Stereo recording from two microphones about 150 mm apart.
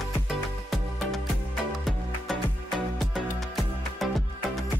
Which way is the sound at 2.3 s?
Centre (ahead or behind).